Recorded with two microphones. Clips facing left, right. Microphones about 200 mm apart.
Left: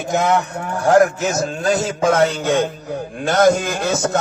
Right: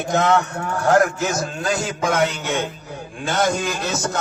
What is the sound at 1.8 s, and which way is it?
Music, 30° left (ahead or behind).